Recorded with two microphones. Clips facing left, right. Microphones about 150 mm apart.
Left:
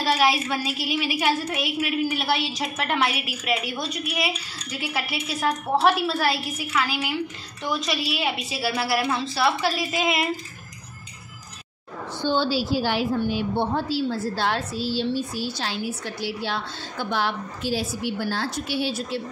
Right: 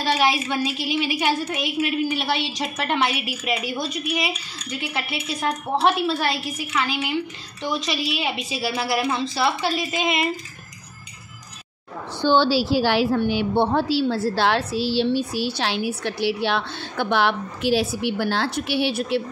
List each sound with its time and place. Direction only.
0.0 s a woman's voice: centre (ahead or behind)
12.2 s a woman's voice: 80° right